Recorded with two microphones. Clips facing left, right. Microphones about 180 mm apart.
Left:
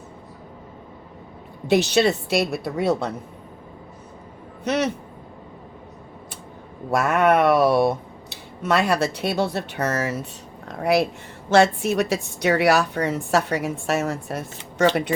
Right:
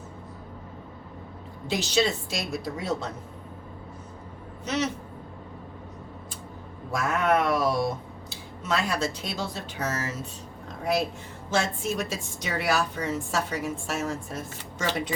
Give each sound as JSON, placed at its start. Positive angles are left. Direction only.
{"t": 1.6, "sound": "speech", "side_deg": 65}
{"t": 4.6, "sound": "speech", "side_deg": 65}
{"t": 6.9, "sound": "speech", "side_deg": 70}
{"t": 10.7, "sound": "a sound", "side_deg": 70}
{"t": 11.4, "sound": "a woman's voice", "side_deg": 70}